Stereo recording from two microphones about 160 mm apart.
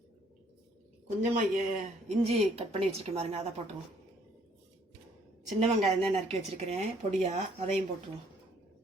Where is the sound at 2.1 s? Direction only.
40° right (ahead or behind).